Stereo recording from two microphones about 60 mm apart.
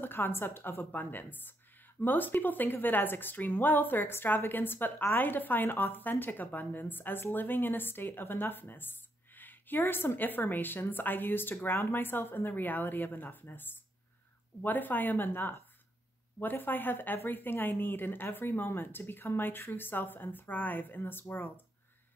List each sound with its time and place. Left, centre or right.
0.0 s speech: left